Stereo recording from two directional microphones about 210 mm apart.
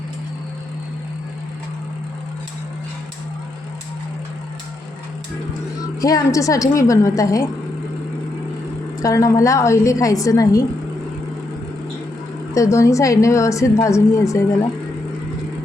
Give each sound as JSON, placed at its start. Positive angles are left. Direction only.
{"t": 6.0, "sound": "a woman's voice", "side_deg": 15}
{"t": 9.0, "sound": "a woman's voice", "side_deg": 15}
{"t": 12.5, "sound": "a woman's voice", "side_deg": 15}